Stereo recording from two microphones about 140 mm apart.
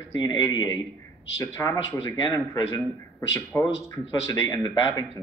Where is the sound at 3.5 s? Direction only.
25° left (ahead or behind).